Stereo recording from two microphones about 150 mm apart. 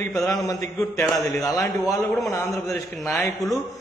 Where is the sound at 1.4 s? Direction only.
25° left (ahead or behind).